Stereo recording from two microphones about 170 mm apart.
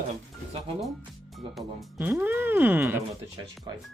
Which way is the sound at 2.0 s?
10° right (ahead or behind).